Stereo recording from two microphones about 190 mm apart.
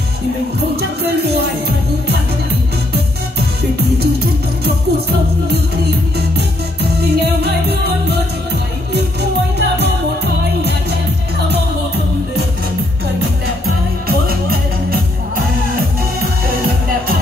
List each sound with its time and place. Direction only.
4.0 s music: 55° right (ahead or behind)
6.1 s music: 60° right (ahead or behind)
9.6 s music: 60° right (ahead or behind)